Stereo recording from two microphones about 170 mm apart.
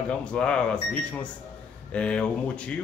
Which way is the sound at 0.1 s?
5° left (ahead or behind).